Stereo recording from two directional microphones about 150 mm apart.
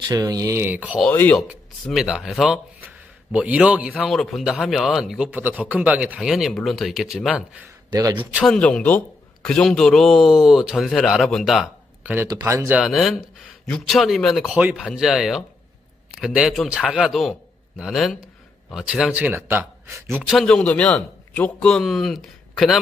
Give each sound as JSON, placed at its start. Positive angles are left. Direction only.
{"t": 0.0, "sound": "speech", "side_deg": -25}
{"t": 1.1, "sound": "speech", "side_deg": 10}
{"t": 1.9, "sound": "a man's voice", "side_deg": -5}
{"t": 7.9, "sound": "a man's voice", "side_deg": -25}
{"t": 8.2, "sound": "speech", "side_deg": -10}
{"t": 8.5, "sound": "a man's voice", "side_deg": 5}
{"t": 12.0, "sound": "speech", "side_deg": -10}
{"t": 12.8, "sound": "a man's voice", "side_deg": 0}
{"t": 20.3, "sound": "a man's voice", "side_deg": 5}